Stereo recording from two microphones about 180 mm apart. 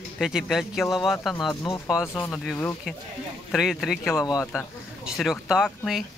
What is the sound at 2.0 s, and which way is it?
Speech, 15° left (ahead or behind).